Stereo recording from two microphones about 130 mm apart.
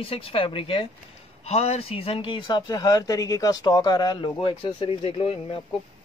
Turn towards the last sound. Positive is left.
turn(degrees=45)  # may be behind; listen again after turning